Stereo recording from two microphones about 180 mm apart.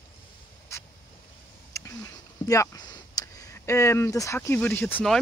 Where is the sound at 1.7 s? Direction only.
15° left (ahead or behind).